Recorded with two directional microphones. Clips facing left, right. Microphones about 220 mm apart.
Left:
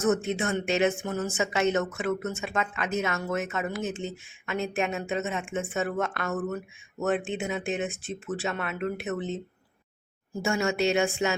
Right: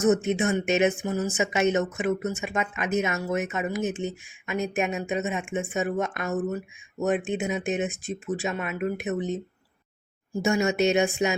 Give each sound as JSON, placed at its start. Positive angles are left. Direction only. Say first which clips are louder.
{"t": 0.0, "sound": "speech", "louder": "right 4 dB", "side_deg": -20}